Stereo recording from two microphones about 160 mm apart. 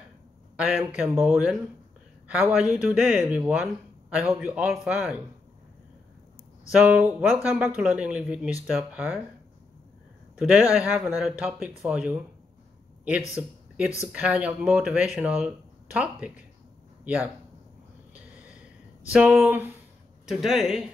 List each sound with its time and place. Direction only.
0.6 s speech: 10° right (ahead or behind)
6.7 s speech: 10° right (ahead or behind)
10.3 s speech: 5° right (ahead or behind)
13.4 s speech: 10° right (ahead or behind)
19.1 s speech: 10° right (ahead or behind)